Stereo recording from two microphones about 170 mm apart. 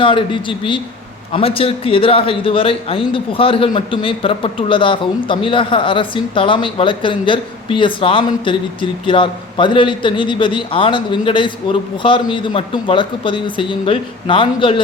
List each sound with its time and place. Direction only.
0.0 s speech: 30° left (ahead or behind)